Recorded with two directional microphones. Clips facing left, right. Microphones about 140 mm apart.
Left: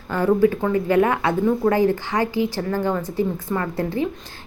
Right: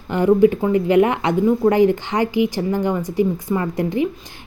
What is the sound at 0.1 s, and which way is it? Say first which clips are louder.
Speech: right 4 dB; 20° right (ahead or behind).